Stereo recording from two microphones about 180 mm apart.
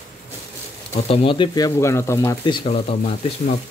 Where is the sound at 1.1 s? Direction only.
30° left (ahead or behind).